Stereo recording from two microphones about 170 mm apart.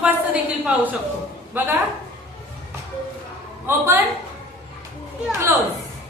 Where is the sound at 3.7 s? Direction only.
15° right (ahead or behind).